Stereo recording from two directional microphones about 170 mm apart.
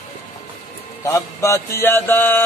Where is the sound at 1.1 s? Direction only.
15° left (ahead or behind).